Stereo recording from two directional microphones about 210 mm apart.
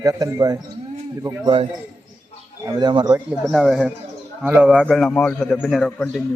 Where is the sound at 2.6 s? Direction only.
20° right (ahead or behind).